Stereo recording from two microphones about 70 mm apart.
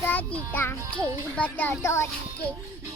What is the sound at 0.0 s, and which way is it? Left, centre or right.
Music, left.